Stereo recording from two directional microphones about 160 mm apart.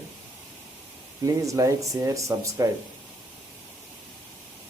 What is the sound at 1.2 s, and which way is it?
Speech, 20° right (ahead or behind).